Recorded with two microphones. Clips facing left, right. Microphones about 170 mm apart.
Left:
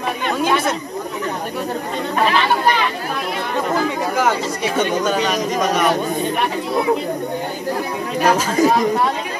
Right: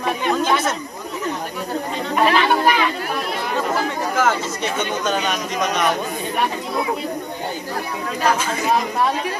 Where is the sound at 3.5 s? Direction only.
15° left (ahead or behind).